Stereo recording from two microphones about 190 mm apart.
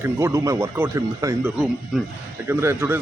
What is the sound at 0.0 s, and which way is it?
A man's voice, 15° right (ahead or behind).